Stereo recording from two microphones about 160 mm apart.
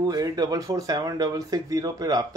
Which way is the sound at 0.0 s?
25° right (ahead or behind).